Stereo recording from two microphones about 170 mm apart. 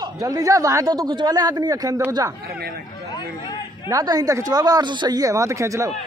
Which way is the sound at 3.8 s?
20° right (ahead or behind).